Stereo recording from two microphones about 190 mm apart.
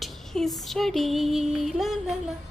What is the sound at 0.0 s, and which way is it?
A woman's voice, centre (ahead or behind).